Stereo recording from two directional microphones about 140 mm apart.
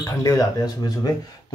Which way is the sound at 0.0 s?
20° left (ahead or behind).